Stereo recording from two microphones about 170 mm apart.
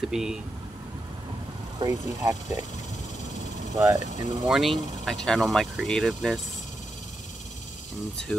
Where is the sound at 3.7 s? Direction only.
20° right (ahead or behind).